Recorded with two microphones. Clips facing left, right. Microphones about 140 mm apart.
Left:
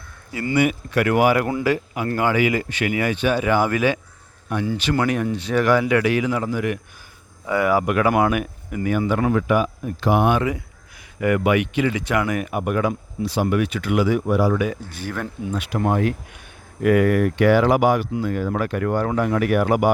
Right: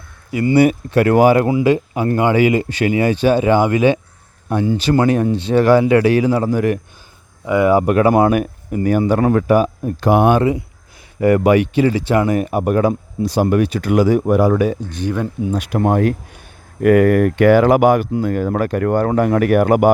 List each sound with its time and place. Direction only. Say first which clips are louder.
0.3 s speech: right 9 dB; 20° right (ahead or behind)
0.5 s speech: right 6 dB; 35° right (ahead or behind)
1.5 s speech: right 7 dB; 15° right (ahead or behind); by 6.7 s 40° right (ahead or behind)
7.4 s speech: right 6 dB; 20° right (ahead or behind); by 10.4 s 50° right (ahead or behind)
11.2 s speech: right 6 dB; 35° right (ahead or behind)
14.8 s speech: right 8 dB; 20° right (ahead or behind)
15.4 s speech: right 4 dB; 45° right (ahead or behind)